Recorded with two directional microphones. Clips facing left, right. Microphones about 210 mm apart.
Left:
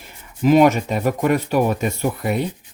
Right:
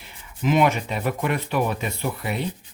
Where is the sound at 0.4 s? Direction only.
40° left (ahead or behind).